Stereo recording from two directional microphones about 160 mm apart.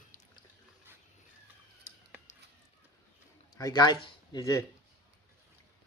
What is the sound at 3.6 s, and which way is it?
Speech, 25° left (ahead or behind).